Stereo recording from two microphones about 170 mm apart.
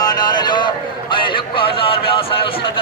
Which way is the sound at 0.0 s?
25° left (ahead or behind).